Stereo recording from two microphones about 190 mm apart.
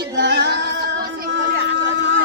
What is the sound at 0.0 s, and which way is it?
Singing, 60° right (ahead or behind).